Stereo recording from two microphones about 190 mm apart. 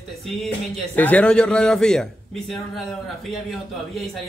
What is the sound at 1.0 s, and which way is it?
A man's voice, 10° left (ahead or behind).